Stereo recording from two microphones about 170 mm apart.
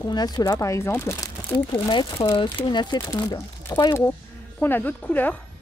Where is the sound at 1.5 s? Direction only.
30° left (ahead or behind).